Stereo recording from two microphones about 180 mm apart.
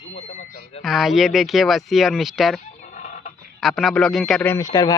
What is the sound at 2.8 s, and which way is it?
Chicken, 45° left (ahead or behind).